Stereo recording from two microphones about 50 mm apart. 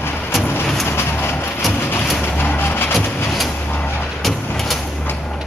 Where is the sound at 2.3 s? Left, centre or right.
Left.